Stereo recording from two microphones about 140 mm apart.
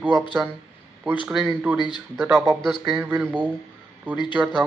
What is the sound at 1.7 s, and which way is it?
Speech, 30° left (ahead or behind).